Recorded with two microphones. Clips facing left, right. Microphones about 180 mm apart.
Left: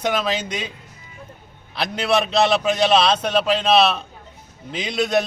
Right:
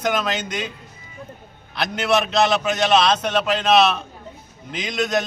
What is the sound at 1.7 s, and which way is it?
A man's voice, 30° left (ahead or behind).